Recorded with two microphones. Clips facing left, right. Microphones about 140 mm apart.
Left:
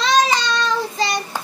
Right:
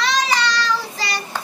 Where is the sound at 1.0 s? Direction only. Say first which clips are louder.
Left 4 dB; 20° left (ahead or behind).